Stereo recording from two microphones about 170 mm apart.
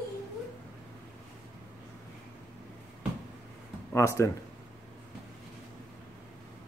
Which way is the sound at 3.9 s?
15° left (ahead or behind).